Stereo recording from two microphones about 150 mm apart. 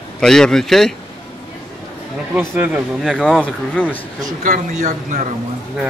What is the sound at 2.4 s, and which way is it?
A man's voice, 10° right (ahead or behind).